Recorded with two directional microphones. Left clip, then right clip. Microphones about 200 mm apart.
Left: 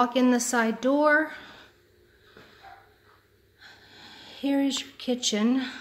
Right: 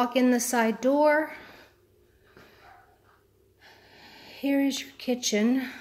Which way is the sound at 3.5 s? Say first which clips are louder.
Left 3 dB; 10° right (ahead or behind).